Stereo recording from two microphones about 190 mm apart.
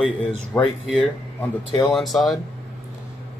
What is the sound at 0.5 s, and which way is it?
Speech, 10° left (ahead or behind).